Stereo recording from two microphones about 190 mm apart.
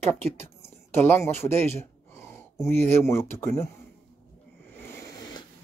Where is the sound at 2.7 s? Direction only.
10° left (ahead or behind).